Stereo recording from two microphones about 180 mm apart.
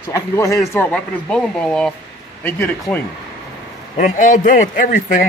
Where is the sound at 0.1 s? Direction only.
20° left (ahead or behind).